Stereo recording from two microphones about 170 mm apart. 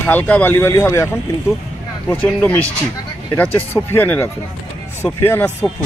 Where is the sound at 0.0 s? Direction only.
10° left (ahead or behind).